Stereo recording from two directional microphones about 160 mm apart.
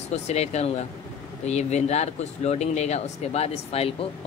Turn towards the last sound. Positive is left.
turn(degrees=40)  # may be behind; listen again after turning